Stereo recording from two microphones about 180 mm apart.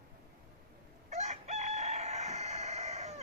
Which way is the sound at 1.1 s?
40° right (ahead or behind).